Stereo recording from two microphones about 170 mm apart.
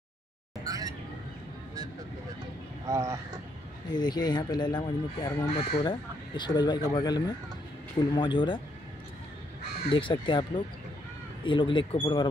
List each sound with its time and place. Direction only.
0.7 s vehicle: 20° right (ahead or behind)
2.9 s speech: 20° right (ahead or behind)
3.9 s speech: 25° left (ahead or behind)
9.8 s speech: 30° left (ahead or behind)